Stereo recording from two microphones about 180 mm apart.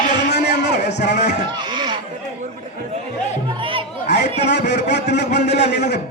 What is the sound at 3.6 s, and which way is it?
Speech, 30° right (ahead or behind).